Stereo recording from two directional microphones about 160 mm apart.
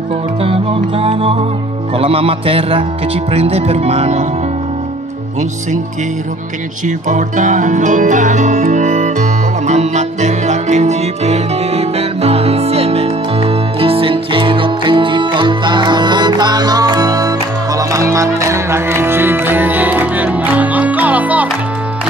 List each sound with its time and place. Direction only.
0.4 s music: 35° right (ahead or behind)
2.0 s speech: 35° right (ahead or behind)
7.1 s music: 50° right (ahead or behind); by 21.5 s 10° right (ahead or behind)